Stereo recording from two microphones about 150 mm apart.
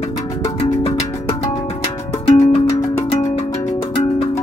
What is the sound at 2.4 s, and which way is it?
Music, 45° left (ahead or behind).